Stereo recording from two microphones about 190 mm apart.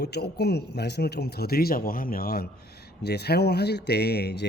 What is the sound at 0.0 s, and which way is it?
Speech, 60° left (ahead or behind).